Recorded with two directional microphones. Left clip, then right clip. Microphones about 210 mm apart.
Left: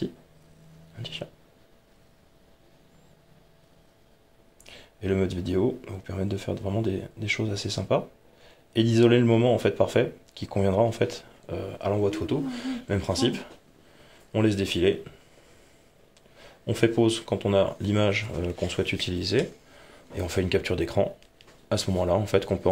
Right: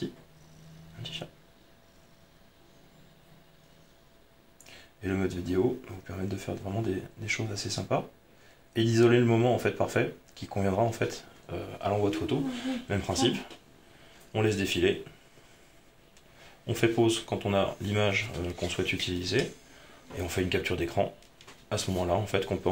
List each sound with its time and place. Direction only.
4.6 s speech: 50° left (ahead or behind)
16.6 s speech: 50° left (ahead or behind)